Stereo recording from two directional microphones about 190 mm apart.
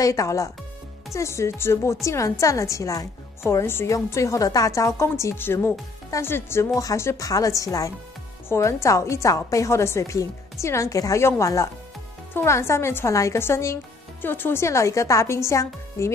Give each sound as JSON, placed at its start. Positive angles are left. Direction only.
{"t": 0.0, "sound": "a woman's voice", "side_deg": 15}